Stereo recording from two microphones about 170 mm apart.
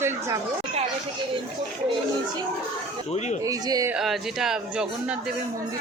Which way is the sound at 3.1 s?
45° left (ahead or behind).